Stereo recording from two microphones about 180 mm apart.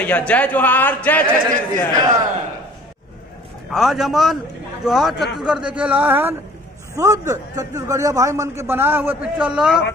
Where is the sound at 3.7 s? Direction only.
Centre (ahead or behind).